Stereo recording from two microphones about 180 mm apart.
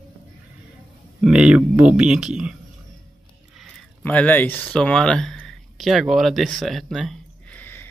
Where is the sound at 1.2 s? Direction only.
5° right (ahead or behind).